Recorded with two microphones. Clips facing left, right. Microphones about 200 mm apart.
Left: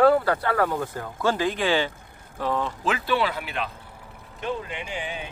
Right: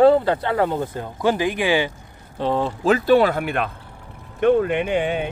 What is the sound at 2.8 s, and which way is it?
Speech, 40° right (ahead or behind).